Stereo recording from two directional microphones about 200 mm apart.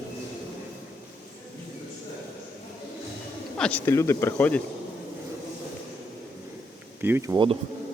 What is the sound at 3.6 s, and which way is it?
Speech, 5° left (ahead or behind).